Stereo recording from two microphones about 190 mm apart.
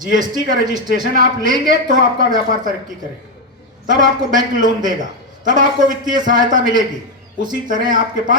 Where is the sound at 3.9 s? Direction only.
45° right (ahead or behind).